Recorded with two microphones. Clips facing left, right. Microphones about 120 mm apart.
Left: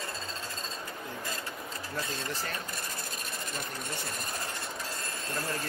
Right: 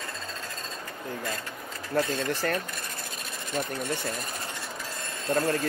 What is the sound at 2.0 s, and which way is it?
Speech, 60° right (ahead or behind).